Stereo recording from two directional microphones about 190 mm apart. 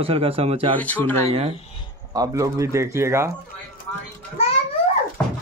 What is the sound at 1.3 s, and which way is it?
Speech, 30° right (ahead or behind).